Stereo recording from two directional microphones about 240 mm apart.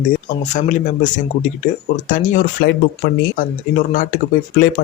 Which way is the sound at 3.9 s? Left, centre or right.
Left.